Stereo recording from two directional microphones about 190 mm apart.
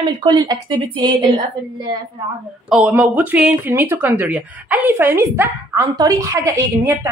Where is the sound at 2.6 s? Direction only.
5° right (ahead or behind).